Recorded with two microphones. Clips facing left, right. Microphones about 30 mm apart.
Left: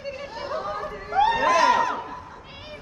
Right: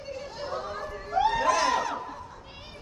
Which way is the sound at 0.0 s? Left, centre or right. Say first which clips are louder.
Left 3 dB; left.